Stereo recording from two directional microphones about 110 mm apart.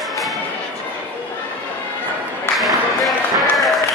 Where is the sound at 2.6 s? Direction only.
Centre (ahead or behind).